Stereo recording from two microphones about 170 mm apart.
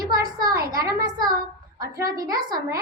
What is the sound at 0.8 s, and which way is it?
A child's voice, 25° right (ahead or behind).